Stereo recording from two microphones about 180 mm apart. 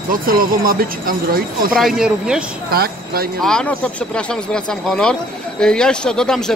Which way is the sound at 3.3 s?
5° left (ahead or behind).